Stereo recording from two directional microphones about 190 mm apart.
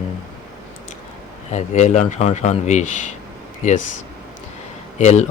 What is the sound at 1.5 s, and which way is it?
Speech, 35° left (ahead or behind).